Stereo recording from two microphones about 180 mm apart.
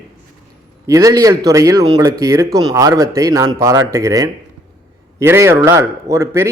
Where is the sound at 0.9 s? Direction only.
20° right (ahead or behind).